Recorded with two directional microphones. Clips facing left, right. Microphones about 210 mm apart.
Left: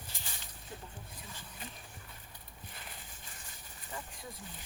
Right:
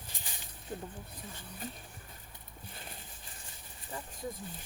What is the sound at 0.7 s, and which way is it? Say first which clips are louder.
Speech: right 7 dB; 55° right (ahead or behind).